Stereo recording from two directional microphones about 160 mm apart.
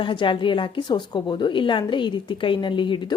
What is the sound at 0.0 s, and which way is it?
A woman's voice, 30° left (ahead or behind).